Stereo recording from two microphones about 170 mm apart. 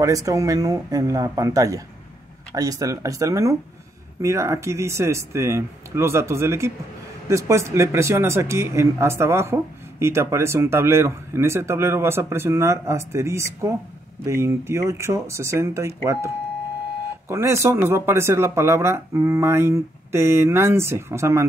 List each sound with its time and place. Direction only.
0.0 s speech: 20° right (ahead or behind)
17.3 s speech: 15° right (ahead or behind)